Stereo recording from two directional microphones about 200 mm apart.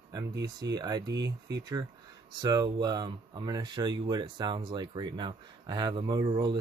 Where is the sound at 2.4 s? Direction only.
20° right (ahead or behind).